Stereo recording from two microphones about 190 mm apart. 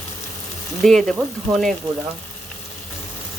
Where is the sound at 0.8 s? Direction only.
Centre (ahead or behind).